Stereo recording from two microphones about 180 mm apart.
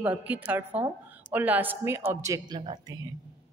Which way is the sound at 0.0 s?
10° right (ahead or behind).